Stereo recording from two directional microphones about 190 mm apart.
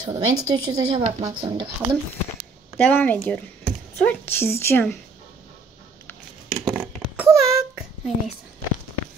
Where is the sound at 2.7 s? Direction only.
10° left (ahead or behind).